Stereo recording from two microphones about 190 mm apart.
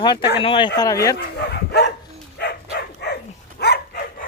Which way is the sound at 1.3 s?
60° left (ahead or behind).